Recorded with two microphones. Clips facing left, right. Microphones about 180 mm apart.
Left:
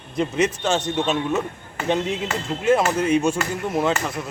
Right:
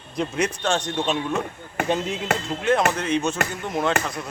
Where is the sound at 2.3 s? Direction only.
60° right (ahead or behind).